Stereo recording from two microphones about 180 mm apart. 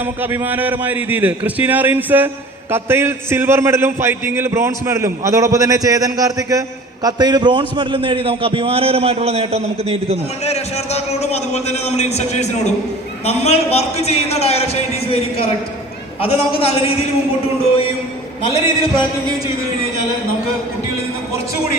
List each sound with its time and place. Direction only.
0.2 s a man's voice: 10° right (ahead or behind); by 10.2 s 35° right (ahead or behind)
10.4 s a man's voice: 35° left (ahead or behind)
16.2 s a man's voice: 30° left (ahead or behind)
18.4 s a man's voice: 30° left (ahead or behind)